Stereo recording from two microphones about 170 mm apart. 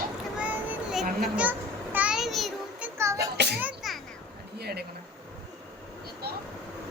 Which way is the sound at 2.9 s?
15° right (ahead or behind).